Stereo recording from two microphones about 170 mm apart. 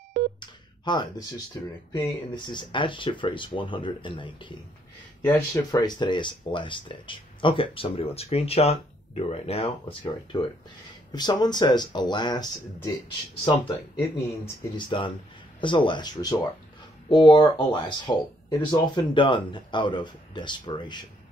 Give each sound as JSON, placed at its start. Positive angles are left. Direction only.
{"t": 0.4, "sound": "speech", "side_deg": 25}
{"t": 13.9, "sound": "speech", "side_deg": 15}
{"t": 14.9, "sound": "speech", "side_deg": 30}